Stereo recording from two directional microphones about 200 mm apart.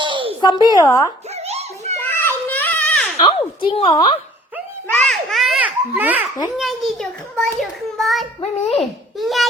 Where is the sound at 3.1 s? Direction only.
25° left (ahead or behind).